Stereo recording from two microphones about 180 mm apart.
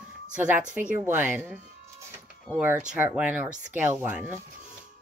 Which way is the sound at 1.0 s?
10° right (ahead or behind).